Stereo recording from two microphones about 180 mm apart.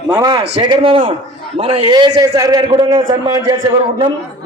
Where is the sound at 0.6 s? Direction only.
25° right (ahead or behind).